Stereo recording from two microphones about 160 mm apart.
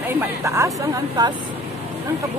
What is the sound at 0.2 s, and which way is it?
Speech, 20° right (ahead or behind).